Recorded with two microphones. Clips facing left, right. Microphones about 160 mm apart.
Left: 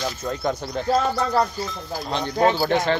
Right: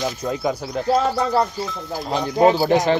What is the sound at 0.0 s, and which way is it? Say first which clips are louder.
Speech: right 3 dB; 10° right (ahead or behind).